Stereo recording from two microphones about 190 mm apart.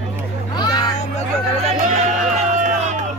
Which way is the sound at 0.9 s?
35° left (ahead or behind).